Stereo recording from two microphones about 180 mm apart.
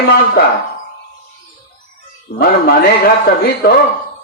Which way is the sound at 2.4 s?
60° left (ahead or behind).